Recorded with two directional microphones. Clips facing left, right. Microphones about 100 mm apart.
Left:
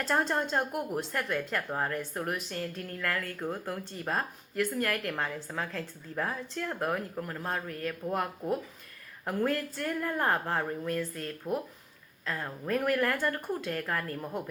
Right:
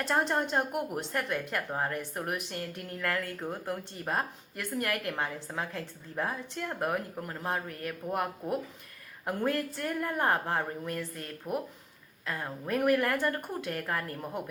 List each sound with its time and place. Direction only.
0.0 s a woman's voice: 20° right (ahead or behind)